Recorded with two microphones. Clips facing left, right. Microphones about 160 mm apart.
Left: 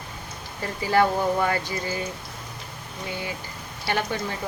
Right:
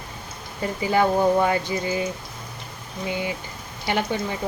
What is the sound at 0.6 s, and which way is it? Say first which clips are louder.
Speech: right 1 dB; 20° right (ahead or behind).